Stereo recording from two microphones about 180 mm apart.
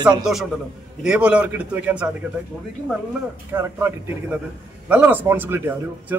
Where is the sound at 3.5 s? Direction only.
15° right (ahead or behind).